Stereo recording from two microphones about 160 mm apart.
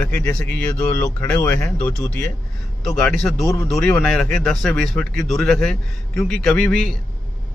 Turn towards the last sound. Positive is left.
turn(degrees=5)  # may be behind; listen again after turning